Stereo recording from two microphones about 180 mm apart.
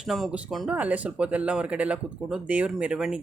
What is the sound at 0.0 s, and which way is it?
Speech, centre (ahead or behind).